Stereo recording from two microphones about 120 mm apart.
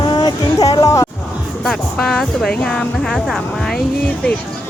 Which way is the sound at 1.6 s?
5° left (ahead or behind).